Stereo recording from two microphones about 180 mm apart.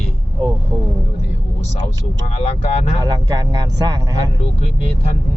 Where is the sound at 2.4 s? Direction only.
35° left (ahead or behind).